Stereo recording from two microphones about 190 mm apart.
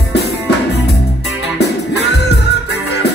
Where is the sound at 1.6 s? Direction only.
60° left (ahead or behind).